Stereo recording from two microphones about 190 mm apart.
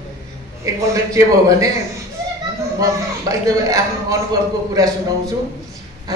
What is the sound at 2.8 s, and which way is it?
A man's voice, 15° right (ahead or behind).